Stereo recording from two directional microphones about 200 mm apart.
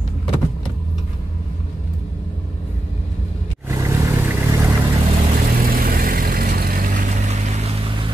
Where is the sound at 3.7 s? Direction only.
15° right (ahead or behind).